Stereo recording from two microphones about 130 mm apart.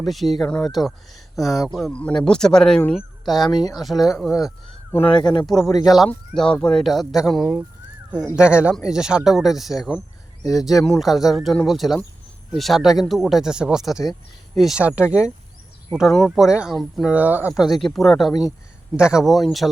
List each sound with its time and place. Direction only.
0.0 s speech: centre (ahead or behind)
3.4 s speech: 30° left (ahead or behind)
3.8 s speech: centre (ahead or behind)
5.0 s speech: 35° left (ahead or behind)
6.1 s speech: 5° left (ahead or behind)
10.4 s speech: 25° left (ahead or behind)
10.8 s speech: centre (ahead or behind)
17.6 s speech: centre (ahead or behind)